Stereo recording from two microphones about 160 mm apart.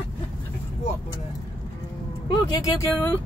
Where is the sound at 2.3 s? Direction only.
20° left (ahead or behind).